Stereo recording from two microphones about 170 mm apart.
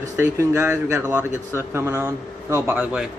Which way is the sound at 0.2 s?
15° right (ahead or behind).